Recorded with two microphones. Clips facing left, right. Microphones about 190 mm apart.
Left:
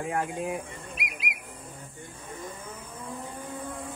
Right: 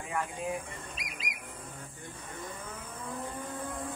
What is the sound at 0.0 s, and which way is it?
Speech, 65° left (ahead or behind).